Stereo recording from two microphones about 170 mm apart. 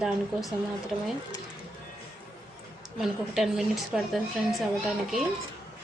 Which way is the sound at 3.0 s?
Centre (ahead or behind).